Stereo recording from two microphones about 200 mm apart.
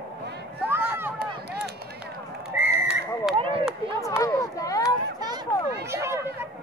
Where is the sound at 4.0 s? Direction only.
15° left (ahead or behind).